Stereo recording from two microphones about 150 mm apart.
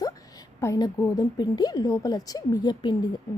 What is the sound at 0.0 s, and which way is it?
A woman's voice, 20° left (ahead or behind).